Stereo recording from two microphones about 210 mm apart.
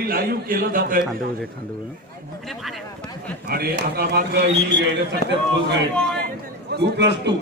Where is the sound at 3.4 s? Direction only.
45° right (ahead or behind).